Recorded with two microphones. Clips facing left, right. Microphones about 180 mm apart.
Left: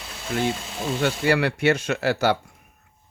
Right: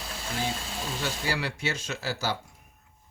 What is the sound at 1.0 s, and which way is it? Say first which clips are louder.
Speech: left 11 dB; 60° left (ahead or behind).